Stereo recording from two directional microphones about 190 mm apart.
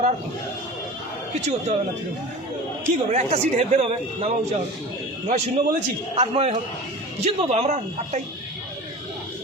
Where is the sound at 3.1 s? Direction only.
35° right (ahead or behind).